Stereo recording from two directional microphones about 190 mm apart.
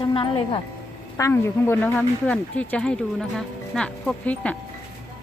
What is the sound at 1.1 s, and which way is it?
A woman's voice, 10° left (ahead or behind).